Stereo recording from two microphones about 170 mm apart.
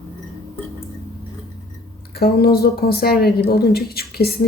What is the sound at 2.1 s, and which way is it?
A woman's voice, 65° left (ahead or behind).